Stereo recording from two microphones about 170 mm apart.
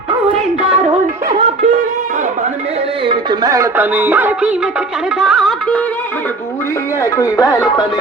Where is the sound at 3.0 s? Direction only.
30° right (ahead or behind); by 5.9 s 5° left (ahead or behind).